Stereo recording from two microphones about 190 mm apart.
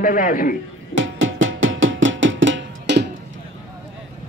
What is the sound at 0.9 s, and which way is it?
Music, 90° right.